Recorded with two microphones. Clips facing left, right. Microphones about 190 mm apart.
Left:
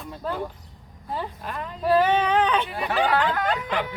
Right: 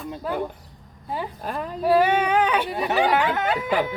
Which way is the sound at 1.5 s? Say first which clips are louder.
Right 4 dB; 40° right (ahead or behind).